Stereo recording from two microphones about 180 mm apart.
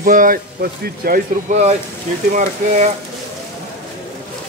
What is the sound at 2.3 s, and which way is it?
Speech, 40° right (ahead or behind).